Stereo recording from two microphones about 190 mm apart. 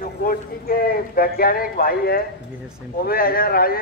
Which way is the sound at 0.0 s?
50° left (ahead or behind).